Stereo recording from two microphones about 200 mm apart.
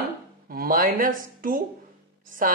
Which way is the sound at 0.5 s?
45° right (ahead or behind).